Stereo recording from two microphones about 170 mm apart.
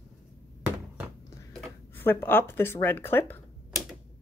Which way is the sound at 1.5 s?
5° left (ahead or behind).